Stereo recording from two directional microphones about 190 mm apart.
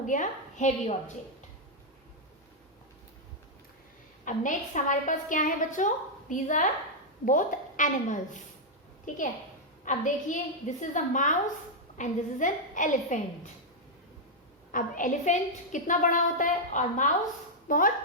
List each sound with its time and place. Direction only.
0.0 s a woman's voice: 40° left (ahead or behind)
4.3 s a woman's voice: 40° left (ahead or behind)
14.7 s a woman's voice: 45° left (ahead or behind)